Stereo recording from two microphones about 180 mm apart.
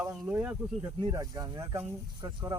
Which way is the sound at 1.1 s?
20° right (ahead or behind).